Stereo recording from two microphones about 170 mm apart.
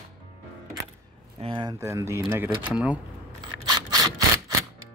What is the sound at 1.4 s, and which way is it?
Speech, 30° right (ahead or behind).